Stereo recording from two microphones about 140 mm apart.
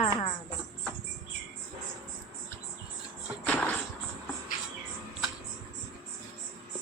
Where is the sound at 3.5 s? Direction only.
10° left (ahead or behind).